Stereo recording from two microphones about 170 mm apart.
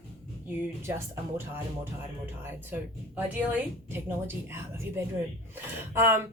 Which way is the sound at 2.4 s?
15° right (ahead or behind).